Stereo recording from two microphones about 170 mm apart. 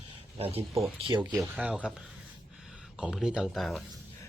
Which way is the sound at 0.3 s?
35° right (ahead or behind).